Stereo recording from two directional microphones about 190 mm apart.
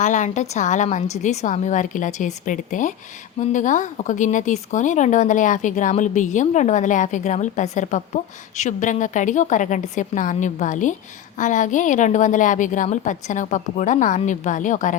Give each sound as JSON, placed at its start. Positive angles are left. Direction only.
{"t": 0.0, "sound": "speech", "side_deg": 40}